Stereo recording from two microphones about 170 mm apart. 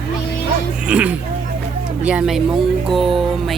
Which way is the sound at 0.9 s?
5° right (ahead or behind).